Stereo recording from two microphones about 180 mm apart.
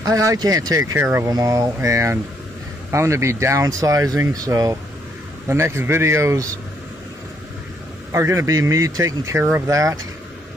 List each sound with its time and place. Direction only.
0.0 s speech: 20° right (ahead or behind)
8.1 s speech: 15° right (ahead or behind)